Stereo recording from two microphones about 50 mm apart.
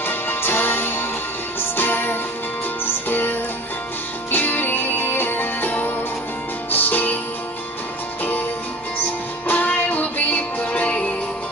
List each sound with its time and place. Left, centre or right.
0.0 s music: left
9.5 s music: left